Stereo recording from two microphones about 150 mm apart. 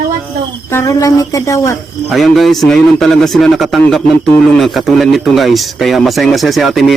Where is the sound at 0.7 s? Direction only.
20° left (ahead or behind).